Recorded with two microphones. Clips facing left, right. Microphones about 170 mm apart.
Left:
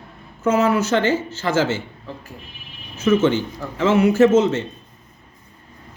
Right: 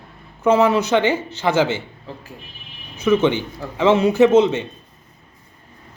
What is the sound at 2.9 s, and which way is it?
Speech, 15° right (ahead or behind).